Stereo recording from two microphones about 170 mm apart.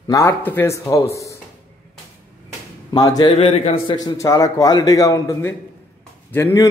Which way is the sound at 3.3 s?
35° left (ahead or behind).